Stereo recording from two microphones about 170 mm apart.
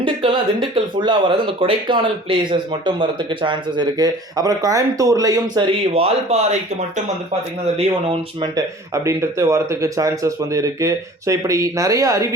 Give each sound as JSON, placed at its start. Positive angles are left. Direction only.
{"t": 0.0, "sound": "speech", "side_deg": -30}
{"t": 5.9, "sound": "speech", "side_deg": -35}
{"t": 9.0, "sound": "speech", "side_deg": -15}